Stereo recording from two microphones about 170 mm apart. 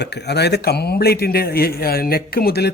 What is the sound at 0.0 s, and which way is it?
Speech, 80° left.